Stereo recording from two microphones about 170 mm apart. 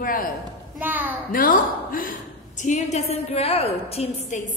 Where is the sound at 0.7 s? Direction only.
10° right (ahead or behind).